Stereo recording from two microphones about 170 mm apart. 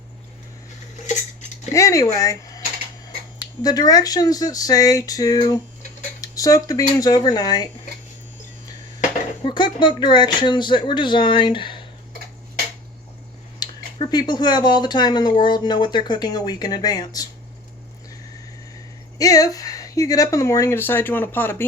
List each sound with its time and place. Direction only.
1.7 s speech: 20° left (ahead or behind)
3.6 s speech: 25° left (ahead or behind)
9.4 s speech: 30° left (ahead or behind)
13.6 s speech: 25° left (ahead or behind)
19.2 s speech: 20° left (ahead or behind)